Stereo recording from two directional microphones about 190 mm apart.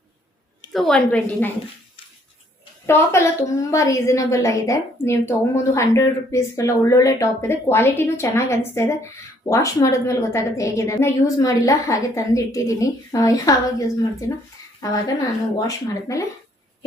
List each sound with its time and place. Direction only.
0.7 s a woman's voice: centre (ahead or behind)
2.8 s a woman's voice: 15° left (ahead or behind)